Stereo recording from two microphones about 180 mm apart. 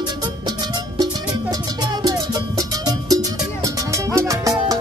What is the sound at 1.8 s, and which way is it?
Music, 20° right (ahead or behind).